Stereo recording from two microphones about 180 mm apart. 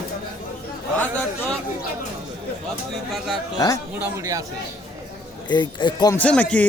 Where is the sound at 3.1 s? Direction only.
Centre (ahead or behind).